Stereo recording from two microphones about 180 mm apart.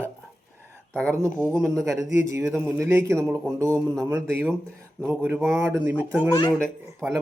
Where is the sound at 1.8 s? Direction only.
15° right (ahead or behind).